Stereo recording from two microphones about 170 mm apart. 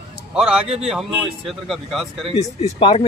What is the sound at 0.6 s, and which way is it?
Speech, 35° right (ahead or behind).